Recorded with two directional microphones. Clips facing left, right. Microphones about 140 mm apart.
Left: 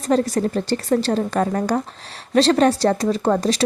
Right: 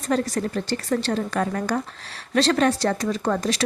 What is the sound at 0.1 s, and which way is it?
Speech, 30° left (ahead or behind).